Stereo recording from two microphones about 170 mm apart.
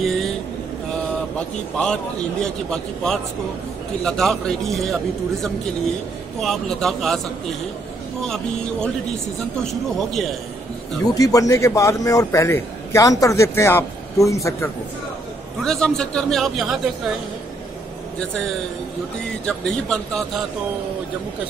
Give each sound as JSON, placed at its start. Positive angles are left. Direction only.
{"t": 0.0, "sound": "a sound", "side_deg": 0}
{"t": 1.8, "sound": "a man's voice", "side_deg": 5}
{"t": 6.4, "sound": "a man's voice", "side_deg": 0}
{"t": 9.6, "sound": "a man's voice", "side_deg": 0}
{"t": 11.1, "sound": "a man's voice", "side_deg": 20}
{"t": 15.6, "sound": "a man's voice", "side_deg": 5}
{"t": 19.4, "sound": "a man's voice", "side_deg": 5}